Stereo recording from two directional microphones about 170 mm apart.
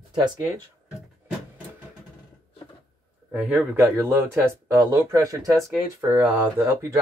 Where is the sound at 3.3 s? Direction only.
5° right (ahead or behind).